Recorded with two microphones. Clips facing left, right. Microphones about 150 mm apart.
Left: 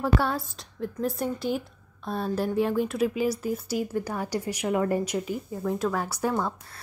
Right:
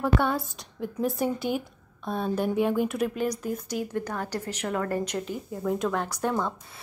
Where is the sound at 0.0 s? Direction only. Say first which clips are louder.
Right 1 dB; centre (ahead or behind).